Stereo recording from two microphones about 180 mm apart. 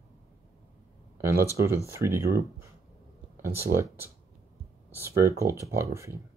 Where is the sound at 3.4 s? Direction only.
15° right (ahead or behind).